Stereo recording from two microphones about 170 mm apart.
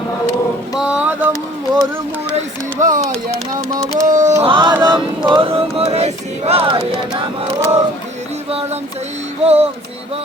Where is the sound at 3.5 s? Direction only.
20° right (ahead or behind).